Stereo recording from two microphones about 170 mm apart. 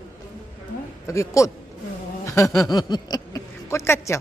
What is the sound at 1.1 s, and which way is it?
A man's voice, 20° left (ahead or behind).